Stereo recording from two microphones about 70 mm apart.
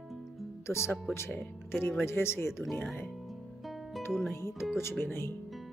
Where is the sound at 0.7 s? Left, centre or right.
Left.